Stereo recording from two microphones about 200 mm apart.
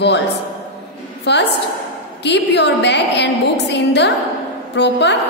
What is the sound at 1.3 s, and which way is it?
A woman's voice, 60° left (ahead or behind).